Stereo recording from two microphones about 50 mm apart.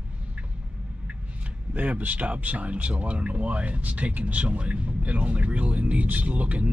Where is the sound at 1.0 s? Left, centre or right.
Right.